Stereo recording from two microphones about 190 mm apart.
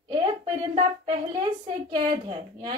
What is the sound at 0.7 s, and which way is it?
A woman's voice, 25° right (ahead or behind).